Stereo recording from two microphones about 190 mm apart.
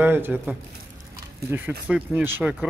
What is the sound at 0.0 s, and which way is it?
Speech, 10° right (ahead or behind).